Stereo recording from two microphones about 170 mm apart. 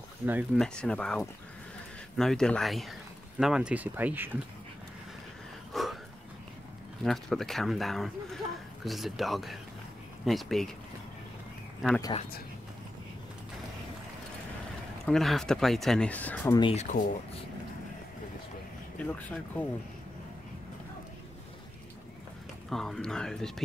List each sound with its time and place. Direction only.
0.2 s speech: 10° right (ahead or behind)
0.6 s speech: 5° left (ahead or behind); by 4.3 s 10° right (ahead or behind)
5.7 s a sound: centre (ahead or behind)
7.0 s speech: centre (ahead or behind)
15.0 s speech: centre (ahead or behind)
16.7 s speech: 45° left (ahead or behind)
18.9 s speech: 10° left (ahead or behind)
22.7 s speech: centre (ahead or behind)